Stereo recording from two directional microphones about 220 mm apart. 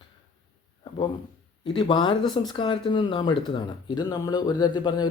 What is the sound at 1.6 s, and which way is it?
Speech, 20° left (ahead or behind).